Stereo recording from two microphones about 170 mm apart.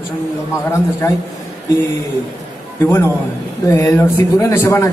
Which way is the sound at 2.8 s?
15° left (ahead or behind).